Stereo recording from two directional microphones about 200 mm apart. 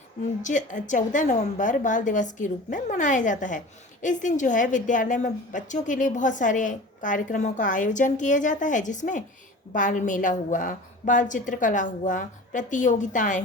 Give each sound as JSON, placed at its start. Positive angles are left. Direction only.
{"t": 0.4, "sound": "a woman's voice", "side_deg": 40}